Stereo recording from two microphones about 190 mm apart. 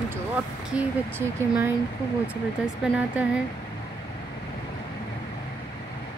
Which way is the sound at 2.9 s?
5° right (ahead or behind).